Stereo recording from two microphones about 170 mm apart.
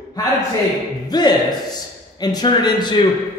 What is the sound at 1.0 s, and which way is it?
Speech, 25° left (ahead or behind).